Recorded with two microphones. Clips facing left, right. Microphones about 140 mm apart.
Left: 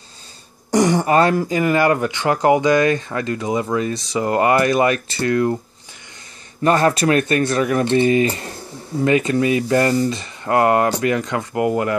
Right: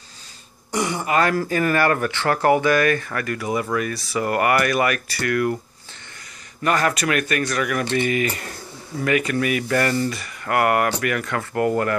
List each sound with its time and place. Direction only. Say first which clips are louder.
0.7 s speech: left 6 dB; 40° left (ahead or behind)
1.3 s speech: left 3 dB; 15° left (ahead or behind)
6.6 s speech: left 5 dB; 30° left (ahead or behind)